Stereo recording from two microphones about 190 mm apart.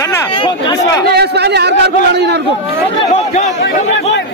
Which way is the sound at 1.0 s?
60° right (ahead or behind).